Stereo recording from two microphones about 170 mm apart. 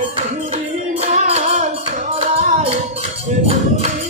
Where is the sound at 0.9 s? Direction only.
40° right (ahead or behind).